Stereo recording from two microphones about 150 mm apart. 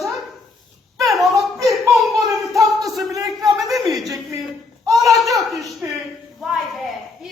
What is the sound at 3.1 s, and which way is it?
Speech, 20° right (ahead or behind).